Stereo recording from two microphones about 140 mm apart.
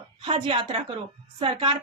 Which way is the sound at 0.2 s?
35° right (ahead or behind).